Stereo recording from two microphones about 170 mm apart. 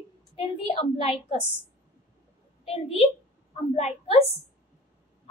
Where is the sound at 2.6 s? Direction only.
35° left (ahead or behind).